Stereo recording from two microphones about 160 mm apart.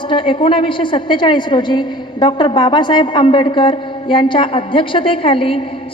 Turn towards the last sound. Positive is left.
turn(degrees=35)  # may be behind; listen again after turning